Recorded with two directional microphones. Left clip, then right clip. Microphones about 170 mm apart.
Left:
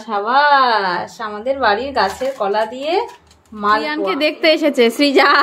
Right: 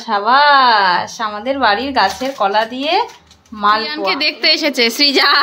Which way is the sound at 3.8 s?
25° left (ahead or behind).